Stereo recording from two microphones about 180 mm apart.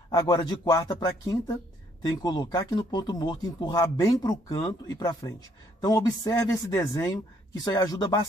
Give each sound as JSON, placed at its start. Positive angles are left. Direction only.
{"t": 0.1, "sound": "speech", "side_deg": 20}